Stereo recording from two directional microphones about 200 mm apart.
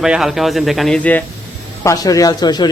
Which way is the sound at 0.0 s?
Centre (ahead or behind).